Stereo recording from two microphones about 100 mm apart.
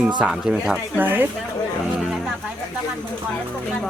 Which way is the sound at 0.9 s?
20° right (ahead or behind).